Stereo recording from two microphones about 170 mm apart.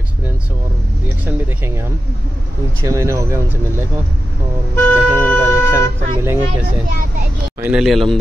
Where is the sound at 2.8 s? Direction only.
20° right (ahead or behind).